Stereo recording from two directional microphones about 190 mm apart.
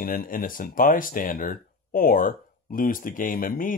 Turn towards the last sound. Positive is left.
turn(degrees=50)  # may be behind; listen again after turning